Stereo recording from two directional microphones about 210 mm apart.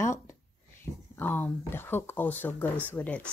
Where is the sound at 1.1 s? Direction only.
10° left (ahead or behind).